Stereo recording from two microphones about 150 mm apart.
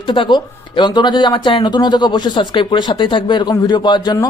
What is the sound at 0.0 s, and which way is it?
Speech, 35° left (ahead or behind).